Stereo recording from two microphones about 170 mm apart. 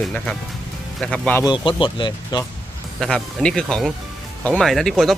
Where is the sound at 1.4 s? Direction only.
25° left (ahead or behind).